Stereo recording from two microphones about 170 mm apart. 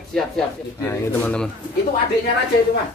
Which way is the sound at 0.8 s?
15° left (ahead or behind).